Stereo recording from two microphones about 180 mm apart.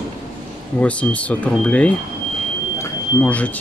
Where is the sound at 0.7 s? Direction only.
5° left (ahead or behind).